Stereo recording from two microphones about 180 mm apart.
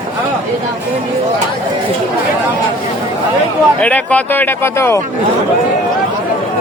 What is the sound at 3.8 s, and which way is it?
Speech, 10° left (ahead or behind).